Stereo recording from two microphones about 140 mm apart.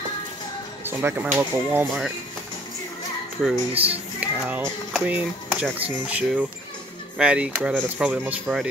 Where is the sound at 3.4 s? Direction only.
Centre (ahead or behind).